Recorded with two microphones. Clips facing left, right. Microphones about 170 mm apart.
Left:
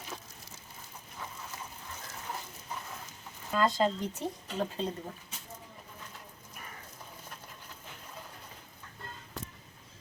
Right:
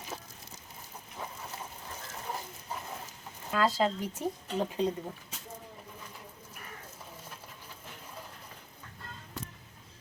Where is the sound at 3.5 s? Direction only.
5° right (ahead or behind).